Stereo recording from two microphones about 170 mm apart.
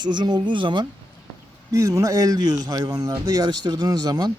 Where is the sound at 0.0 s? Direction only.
25° right (ahead or behind).